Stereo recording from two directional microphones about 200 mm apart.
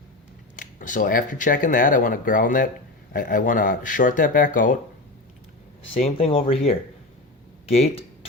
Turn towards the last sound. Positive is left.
turn(degrees=30)  # may be behind; listen again after turning